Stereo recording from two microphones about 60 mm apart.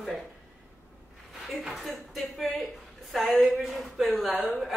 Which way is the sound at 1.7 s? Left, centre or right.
Centre.